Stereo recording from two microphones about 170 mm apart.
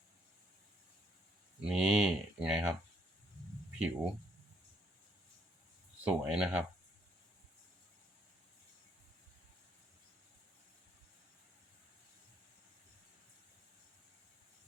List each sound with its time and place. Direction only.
1.6 s speech: 5° right (ahead or behind)
3.8 s speech: 5° right (ahead or behind)
6.1 s speech: 5° right (ahead or behind)